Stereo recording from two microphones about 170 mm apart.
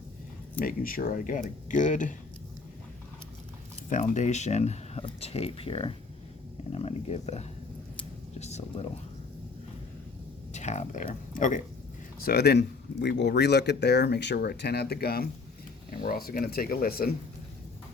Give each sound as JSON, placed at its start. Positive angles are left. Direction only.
{"t": 0.6, "sound": "speech", "side_deg": 60}
{"t": 3.8, "sound": "speech", "side_deg": 45}
{"t": 10.5, "sound": "speech", "side_deg": 45}
{"t": 12.2, "sound": "speech", "side_deg": 70}